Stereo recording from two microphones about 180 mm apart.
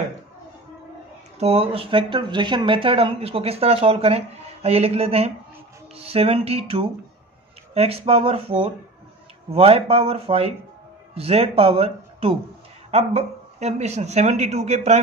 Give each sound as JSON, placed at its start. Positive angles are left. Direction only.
{"t": 1.4, "sound": "speech", "side_deg": -35}